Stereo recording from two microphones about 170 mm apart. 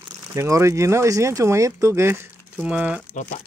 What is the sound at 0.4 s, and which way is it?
Speech, 15° right (ahead or behind).